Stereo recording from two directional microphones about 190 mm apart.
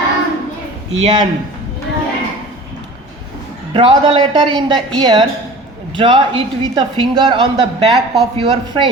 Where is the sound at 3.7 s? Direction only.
25° right (ahead or behind).